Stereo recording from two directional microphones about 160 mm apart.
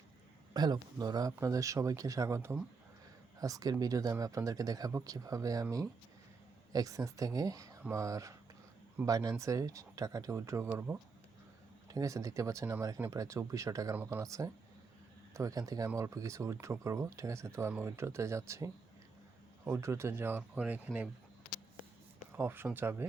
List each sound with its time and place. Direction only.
0.5 s speech: 25° right (ahead or behind)
6.7 s speech: 20° right (ahead or behind)
22.4 s speech: 15° right (ahead or behind)